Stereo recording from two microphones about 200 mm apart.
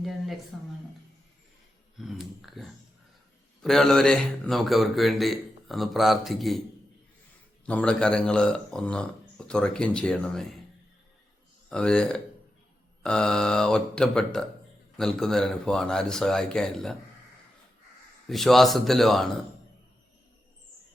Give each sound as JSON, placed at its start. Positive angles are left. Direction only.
{"t": 0.0, "sound": "a sound", "side_deg": 0}
{"t": 2.0, "sound": "speech", "side_deg": 0}
{"t": 7.6, "sound": "speech", "side_deg": 5}
{"t": 11.7, "sound": "speech", "side_deg": 5}
{"t": 18.3, "sound": "speech", "side_deg": 0}